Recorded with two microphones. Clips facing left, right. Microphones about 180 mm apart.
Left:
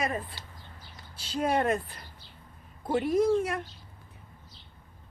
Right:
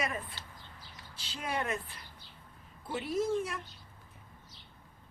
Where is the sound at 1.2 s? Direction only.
45° left (ahead or behind).